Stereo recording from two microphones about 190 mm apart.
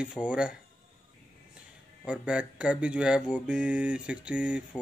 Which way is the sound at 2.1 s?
5° right (ahead or behind).